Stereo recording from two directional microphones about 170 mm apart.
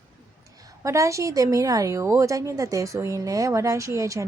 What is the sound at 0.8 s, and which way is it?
A woman's voice, 15° right (ahead or behind).